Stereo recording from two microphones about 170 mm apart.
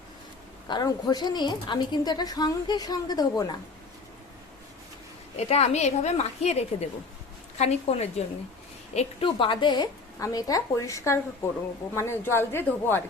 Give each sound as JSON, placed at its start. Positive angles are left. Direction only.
{"t": 0.7, "sound": "a woman's voice", "side_deg": 25}
{"t": 5.4, "sound": "a woman's voice", "side_deg": 40}